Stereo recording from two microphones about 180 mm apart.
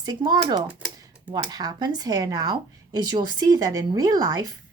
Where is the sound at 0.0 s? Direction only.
20° right (ahead or behind).